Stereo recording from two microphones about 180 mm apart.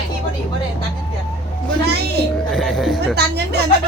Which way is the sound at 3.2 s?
65° right (ahead or behind).